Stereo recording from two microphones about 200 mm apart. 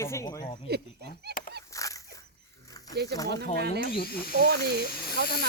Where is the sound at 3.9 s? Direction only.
50° left (ahead or behind).